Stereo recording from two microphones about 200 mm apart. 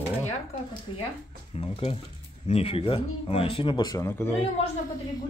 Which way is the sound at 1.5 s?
25° left (ahead or behind).